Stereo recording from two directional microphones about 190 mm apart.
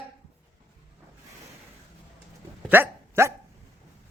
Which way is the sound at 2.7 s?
15° right (ahead or behind).